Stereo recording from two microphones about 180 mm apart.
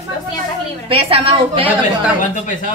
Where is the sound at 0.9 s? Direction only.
30° right (ahead or behind).